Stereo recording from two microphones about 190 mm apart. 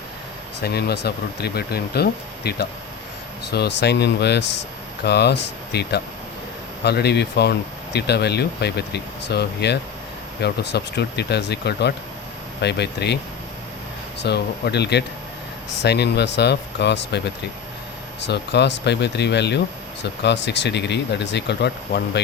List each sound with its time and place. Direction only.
0.6 s speech: 60° left (ahead or behind)
14.2 s speech: 60° left (ahead or behind)